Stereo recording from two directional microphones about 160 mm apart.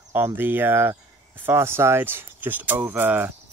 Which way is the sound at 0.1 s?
15° right (ahead or behind).